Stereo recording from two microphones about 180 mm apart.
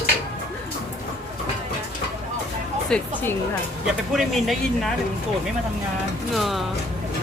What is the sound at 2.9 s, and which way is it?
Speech, 10° left (ahead or behind).